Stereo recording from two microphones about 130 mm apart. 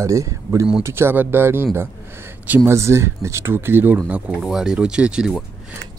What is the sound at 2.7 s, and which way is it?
Speech, 20° right (ahead or behind).